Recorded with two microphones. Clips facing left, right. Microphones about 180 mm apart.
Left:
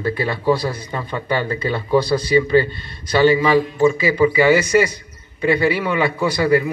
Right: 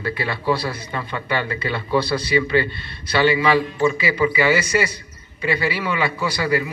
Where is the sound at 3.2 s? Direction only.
45° left (ahead or behind).